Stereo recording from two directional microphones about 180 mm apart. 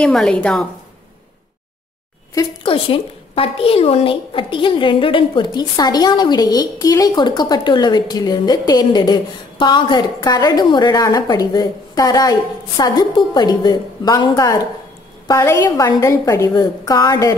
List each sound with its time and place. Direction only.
0.0 s a woman's voice: 5° left (ahead or behind)
2.3 s a woman's voice: 30° left (ahead or behind)